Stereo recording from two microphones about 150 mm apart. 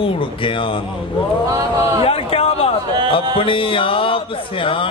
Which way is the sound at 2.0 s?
40° left (ahead or behind).